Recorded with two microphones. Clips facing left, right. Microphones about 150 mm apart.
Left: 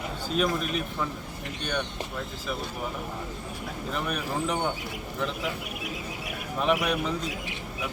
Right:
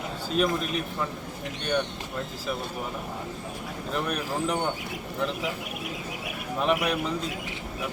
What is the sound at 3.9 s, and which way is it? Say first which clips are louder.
Speech: right 2 dB; centre (ahead or behind).